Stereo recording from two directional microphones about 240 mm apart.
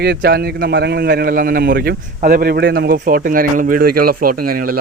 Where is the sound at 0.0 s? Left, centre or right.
Right.